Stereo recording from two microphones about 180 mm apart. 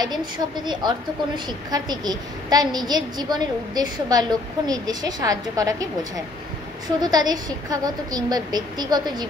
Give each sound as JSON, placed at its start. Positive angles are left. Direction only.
{"t": 0.0, "sound": "a woman's voice", "side_deg": -25}